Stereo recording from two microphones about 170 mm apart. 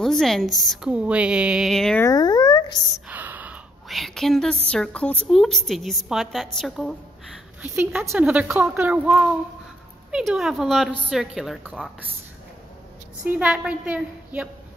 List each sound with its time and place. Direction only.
0.0 s a woman's voice: centre (ahead or behind)
2.0 s a sound: 25° left (ahead or behind)
3.1 s a sound: 10° right (ahead or behind)
4.6 s a woman's voice: 5° left (ahead or behind)
7.6 s a woman's voice: 10° right (ahead or behind)
13.2 s speech: 5° right (ahead or behind)